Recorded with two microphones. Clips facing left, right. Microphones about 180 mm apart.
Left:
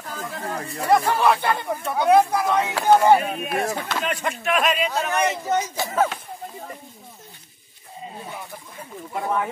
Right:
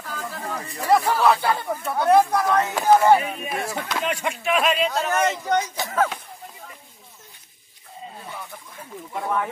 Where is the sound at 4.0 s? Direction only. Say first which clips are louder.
Even; 10° right (ahead or behind).